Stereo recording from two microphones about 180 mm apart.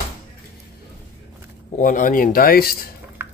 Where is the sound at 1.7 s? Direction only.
45° left (ahead or behind).